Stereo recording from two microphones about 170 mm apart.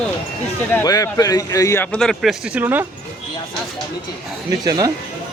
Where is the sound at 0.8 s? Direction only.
20° left (ahead or behind); by 2.6 s centre (ahead or behind).